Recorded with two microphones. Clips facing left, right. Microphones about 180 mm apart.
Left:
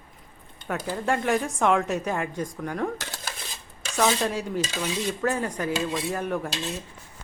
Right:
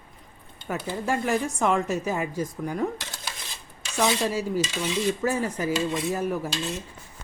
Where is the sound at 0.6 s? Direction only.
5° right (ahead or behind).